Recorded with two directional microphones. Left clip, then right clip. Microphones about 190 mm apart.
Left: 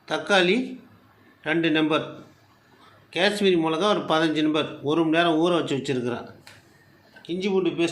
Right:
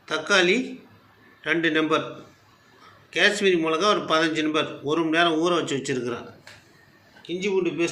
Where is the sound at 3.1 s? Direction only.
45° left (ahead or behind).